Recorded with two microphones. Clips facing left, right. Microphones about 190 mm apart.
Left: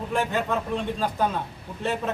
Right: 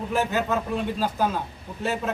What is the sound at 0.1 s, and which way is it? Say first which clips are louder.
Speech: right 1 dB; 5° right (ahead or behind).